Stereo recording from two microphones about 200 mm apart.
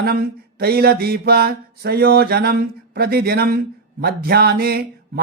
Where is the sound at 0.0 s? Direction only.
50° right (ahead or behind).